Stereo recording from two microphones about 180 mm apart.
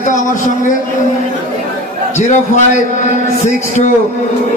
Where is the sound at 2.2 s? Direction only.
40° left (ahead or behind).